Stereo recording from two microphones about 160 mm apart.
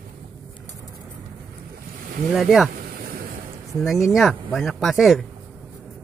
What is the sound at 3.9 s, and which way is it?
Speech, centre (ahead or behind).